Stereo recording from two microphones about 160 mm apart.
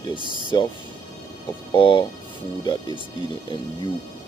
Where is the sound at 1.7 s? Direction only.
30° left (ahead or behind).